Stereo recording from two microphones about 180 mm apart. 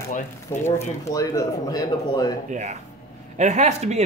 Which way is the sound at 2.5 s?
40° right (ahead or behind).